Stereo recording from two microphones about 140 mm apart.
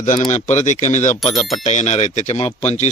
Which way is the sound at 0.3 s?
55° left (ahead or behind).